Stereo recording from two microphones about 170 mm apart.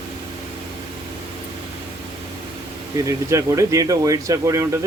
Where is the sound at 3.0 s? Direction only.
20° right (ahead or behind).